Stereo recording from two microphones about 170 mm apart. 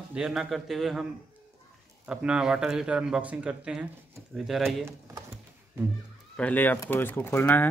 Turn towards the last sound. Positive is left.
turn(degrees=10)  # may be behind; listen again after turning